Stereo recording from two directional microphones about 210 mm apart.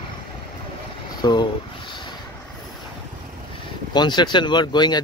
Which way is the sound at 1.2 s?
20° left (ahead or behind).